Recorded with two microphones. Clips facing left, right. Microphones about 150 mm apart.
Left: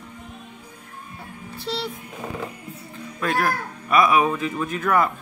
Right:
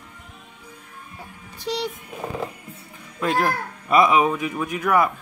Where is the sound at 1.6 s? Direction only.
20° right (ahead or behind).